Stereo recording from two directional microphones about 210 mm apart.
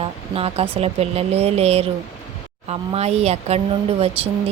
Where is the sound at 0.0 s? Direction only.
25° right (ahead or behind).